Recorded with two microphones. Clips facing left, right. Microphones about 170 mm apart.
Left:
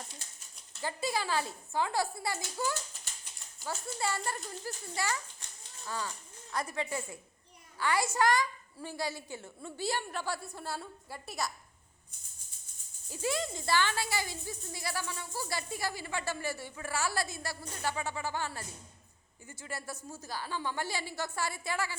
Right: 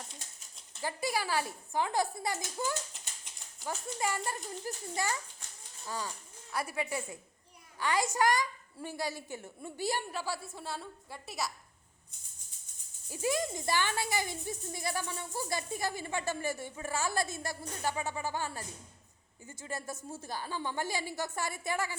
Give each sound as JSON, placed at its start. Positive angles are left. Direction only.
{"t": 0.7, "sound": "a woman's voice", "side_deg": -15}
{"t": 10.1, "sound": "a woman's voice", "side_deg": -5}
{"t": 13.1, "sound": "speech", "side_deg": -15}